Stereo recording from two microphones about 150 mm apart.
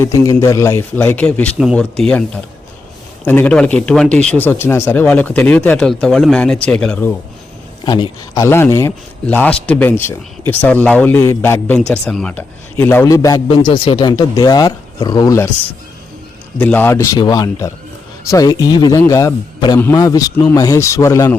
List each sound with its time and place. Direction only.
0.0 s speech: 20° left (ahead or behind)
7.9 s speech: 30° left (ahead or behind)
8.4 s speech: 15° left (ahead or behind)
11.9 s speech: 5° left (ahead or behind); by 13.4 s 25° left (ahead or behind)
13.5 s speech: 35° left (ahead or behind)
16.6 s speech: 10° left (ahead or behind)